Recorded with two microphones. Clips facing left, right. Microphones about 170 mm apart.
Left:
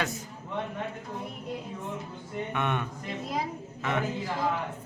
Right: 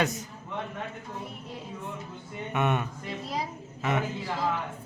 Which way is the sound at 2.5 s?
10° right (ahead or behind).